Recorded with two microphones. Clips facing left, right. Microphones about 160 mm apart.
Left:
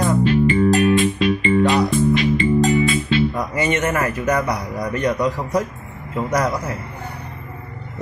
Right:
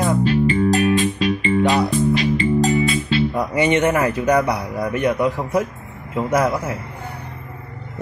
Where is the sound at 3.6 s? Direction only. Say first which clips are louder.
Right 3 dB; 15° right (ahead or behind).